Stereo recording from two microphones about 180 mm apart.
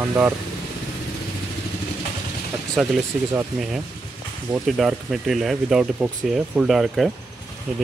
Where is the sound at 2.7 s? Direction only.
Centre (ahead or behind).